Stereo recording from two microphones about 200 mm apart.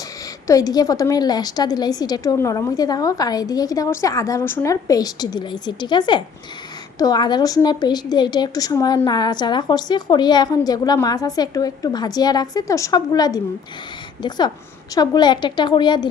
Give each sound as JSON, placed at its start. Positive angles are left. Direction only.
{"t": 0.4, "sound": "a woman's voice", "side_deg": 15}